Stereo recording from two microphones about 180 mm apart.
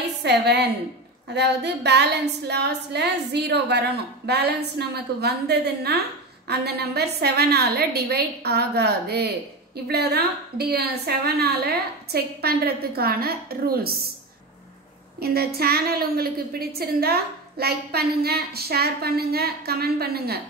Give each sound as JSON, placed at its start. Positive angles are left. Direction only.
{"t": 0.2, "sound": "a woman's voice", "side_deg": -70}
{"t": 15.1, "sound": "a woman's voice", "side_deg": -60}